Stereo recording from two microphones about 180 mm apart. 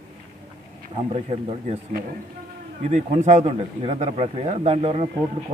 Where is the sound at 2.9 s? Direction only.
40° right (ahead or behind).